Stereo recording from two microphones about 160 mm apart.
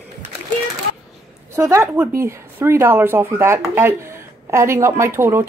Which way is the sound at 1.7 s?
20° right (ahead or behind).